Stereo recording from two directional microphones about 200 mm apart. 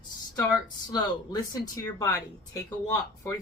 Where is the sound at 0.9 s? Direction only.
20° left (ahead or behind).